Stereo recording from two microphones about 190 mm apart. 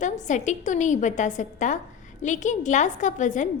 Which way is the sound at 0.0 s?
40° left (ahead or behind).